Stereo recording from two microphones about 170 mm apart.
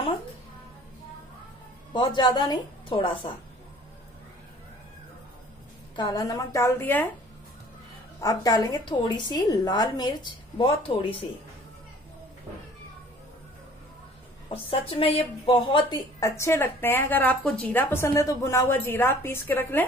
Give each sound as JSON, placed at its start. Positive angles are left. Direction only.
{"t": 2.0, "sound": "a woman's voice", "side_deg": 25}
{"t": 5.9, "sound": "a woman's voice", "side_deg": 25}
{"t": 8.2, "sound": "a woman's voice", "side_deg": 20}
{"t": 14.5, "sound": "speech", "side_deg": 35}
{"t": 16.2, "sound": "a woman's voice", "side_deg": 15}